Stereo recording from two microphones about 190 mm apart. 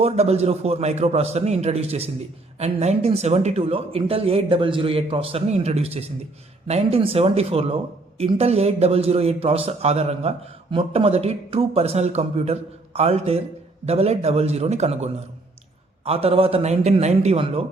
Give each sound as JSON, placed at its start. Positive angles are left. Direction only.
{"t": 0.0, "sound": "a man's voice", "side_deg": -35}